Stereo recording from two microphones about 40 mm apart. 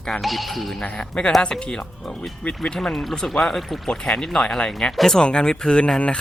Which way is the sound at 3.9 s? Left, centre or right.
Left.